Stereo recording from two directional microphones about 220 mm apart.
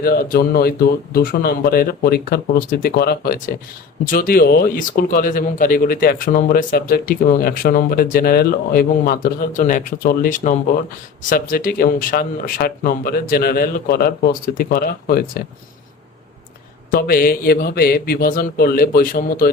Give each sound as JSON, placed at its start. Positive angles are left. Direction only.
{"t": 0.0, "sound": "speech", "side_deg": 40}
{"t": 16.9, "sound": "speech", "side_deg": 40}